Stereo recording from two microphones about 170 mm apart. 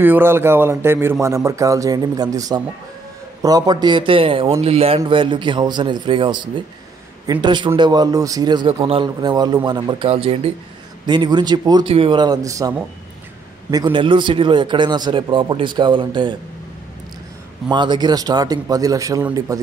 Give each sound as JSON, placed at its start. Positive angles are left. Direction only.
{"t": 0.0, "sound": "a man's voice", "side_deg": -10}
{"t": 17.6, "sound": "a man's voice", "side_deg": -25}